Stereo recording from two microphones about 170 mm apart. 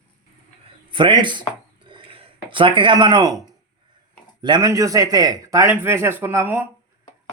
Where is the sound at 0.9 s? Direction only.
30° right (ahead or behind).